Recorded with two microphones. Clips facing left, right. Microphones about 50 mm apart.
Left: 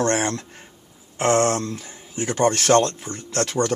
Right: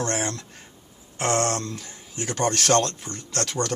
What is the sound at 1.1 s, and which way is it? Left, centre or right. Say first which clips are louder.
Speech: left 5 dB; centre.